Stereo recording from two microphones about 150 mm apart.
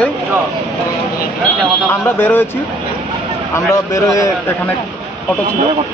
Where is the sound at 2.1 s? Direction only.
15° left (ahead or behind).